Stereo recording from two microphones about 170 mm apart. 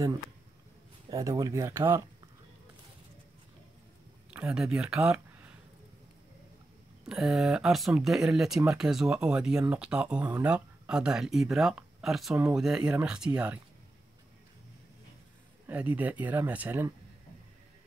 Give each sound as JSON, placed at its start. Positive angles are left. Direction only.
{"t": 1.1, "sound": "speech", "side_deg": -20}
{"t": 4.3, "sound": "speech", "side_deg": -5}
{"t": 7.1, "sound": "speech", "side_deg": 0}
{"t": 15.6, "sound": "speech", "side_deg": -10}